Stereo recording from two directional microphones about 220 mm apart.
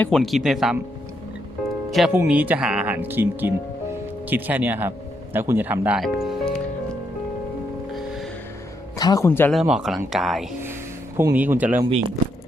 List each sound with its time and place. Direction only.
0.0 s speech: centre (ahead or behind)
1.9 s speech: 5° right (ahead or behind)
7.9 s music: centre (ahead or behind)
9.0 s speech: 15° left (ahead or behind); by 11.9 s 5° right (ahead or behind)
11.9 s speech: 25° right (ahead or behind)